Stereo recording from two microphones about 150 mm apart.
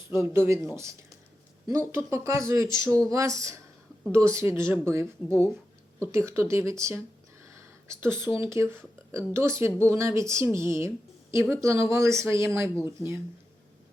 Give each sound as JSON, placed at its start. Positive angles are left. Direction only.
{"t": 0.2, "sound": "speech", "side_deg": -15}
{"t": 7.5, "sound": "a sound", "side_deg": -20}
{"t": 8.4, "sound": "speech", "side_deg": -20}